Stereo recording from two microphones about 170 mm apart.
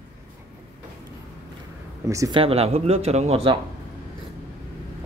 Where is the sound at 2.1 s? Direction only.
20° right (ahead or behind).